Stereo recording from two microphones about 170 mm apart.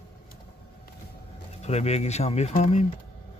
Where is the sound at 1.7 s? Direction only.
40° left (ahead or behind).